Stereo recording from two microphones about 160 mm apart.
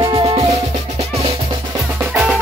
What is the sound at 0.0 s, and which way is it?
Music, 30° right (ahead or behind).